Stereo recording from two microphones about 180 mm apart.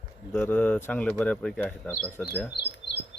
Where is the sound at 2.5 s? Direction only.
70° left (ahead or behind).